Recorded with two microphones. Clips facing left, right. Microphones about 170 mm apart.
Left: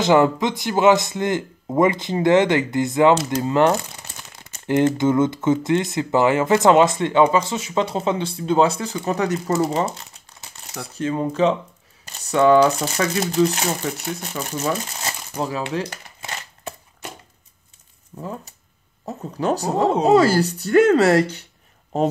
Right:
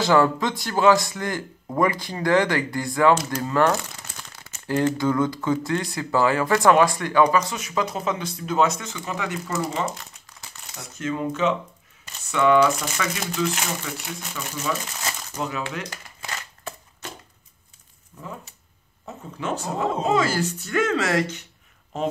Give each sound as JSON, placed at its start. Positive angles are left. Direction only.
{"t": 0.0, "sound": "speech", "side_deg": 20}
{"t": 15.7, "sound": "crumpling", "side_deg": 30}
{"t": 18.1, "sound": "speech", "side_deg": 35}